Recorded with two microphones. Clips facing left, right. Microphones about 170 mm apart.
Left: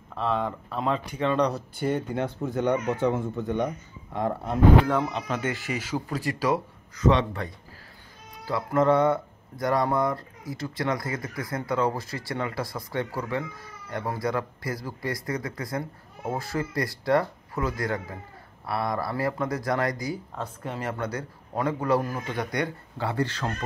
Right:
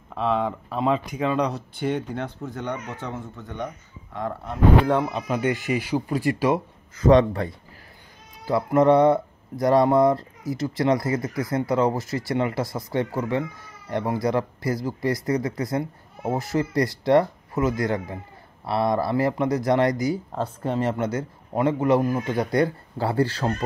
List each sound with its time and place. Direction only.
0.1 s speech: centre (ahead or behind)
1.5 s speech: 5° left (ahead or behind)
5.1 s speech: 15° right (ahead or behind)
7.0 s speech: 40° right (ahead or behind)
8.5 s speech: 25° right (ahead or behind)